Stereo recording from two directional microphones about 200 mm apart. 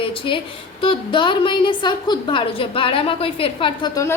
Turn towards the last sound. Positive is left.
turn(degrees=15)  # may be behind; listen again after turning